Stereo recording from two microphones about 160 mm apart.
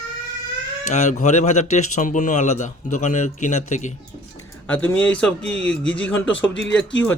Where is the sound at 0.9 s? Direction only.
45° left (ahead or behind).